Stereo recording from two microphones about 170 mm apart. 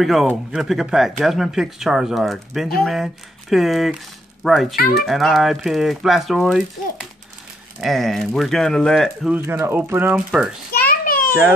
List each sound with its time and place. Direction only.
0.0 s speech: centre (ahead or behind)
9.3 s speech: 15° right (ahead or behind)
10.7 s a sound: 55° left (ahead or behind)